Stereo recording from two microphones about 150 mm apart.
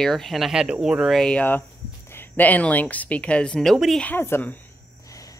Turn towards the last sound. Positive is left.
turn(degrees=15)  # may be behind; listen again after turning